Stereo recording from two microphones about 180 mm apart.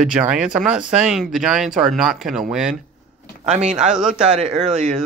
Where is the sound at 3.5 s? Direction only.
40° right (ahead or behind).